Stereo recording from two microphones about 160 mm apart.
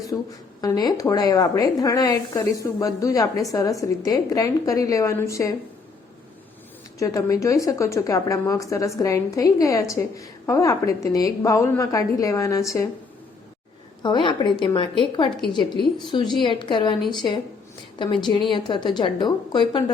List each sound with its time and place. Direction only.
0.1 s a woman's voice: 30° left (ahead or behind)
7.0 s a woman's voice: 20° left (ahead or behind)
14.0 s a woman's voice: 30° left (ahead or behind)
16.4 s a woman's voice: 30° left (ahead or behind)